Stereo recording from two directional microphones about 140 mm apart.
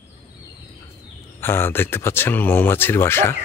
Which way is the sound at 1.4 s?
15° left (ahead or behind).